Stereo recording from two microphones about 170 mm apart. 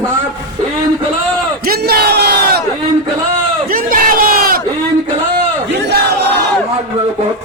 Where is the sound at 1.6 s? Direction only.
65° right (ahead or behind).